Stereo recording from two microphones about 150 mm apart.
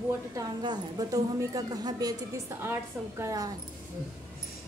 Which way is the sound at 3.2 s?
25° right (ahead or behind).